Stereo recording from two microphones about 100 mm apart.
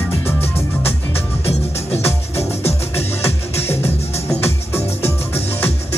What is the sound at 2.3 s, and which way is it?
Music, 90° left.